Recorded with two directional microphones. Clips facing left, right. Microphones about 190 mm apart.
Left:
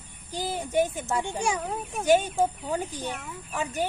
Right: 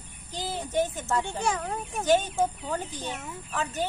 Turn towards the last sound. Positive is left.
turn(degrees=10)  # may be behind; listen again after turning